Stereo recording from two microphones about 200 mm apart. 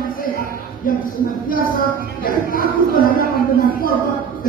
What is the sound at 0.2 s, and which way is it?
A woman's voice, 45° left (ahead or behind).